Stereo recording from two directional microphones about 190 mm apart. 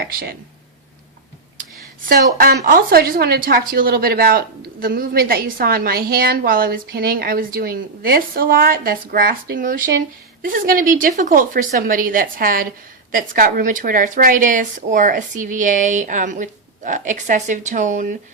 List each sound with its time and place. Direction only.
0.0 s speech: 55° right (ahead or behind)
2.0 s speech: 50° right (ahead or behind)